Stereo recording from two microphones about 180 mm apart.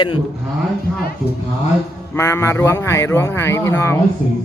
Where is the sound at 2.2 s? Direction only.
15° left (ahead or behind).